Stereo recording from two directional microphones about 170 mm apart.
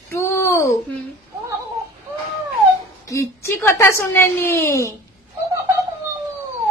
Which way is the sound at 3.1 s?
15° left (ahead or behind).